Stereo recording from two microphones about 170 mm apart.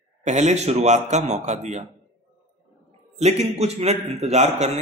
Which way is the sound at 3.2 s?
40° right (ahead or behind).